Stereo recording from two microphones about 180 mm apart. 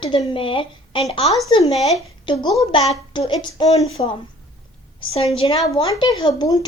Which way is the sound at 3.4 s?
35° left (ahead or behind).